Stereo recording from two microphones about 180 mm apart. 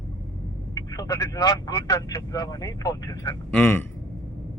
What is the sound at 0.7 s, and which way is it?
Speech, 20° left (ahead or behind).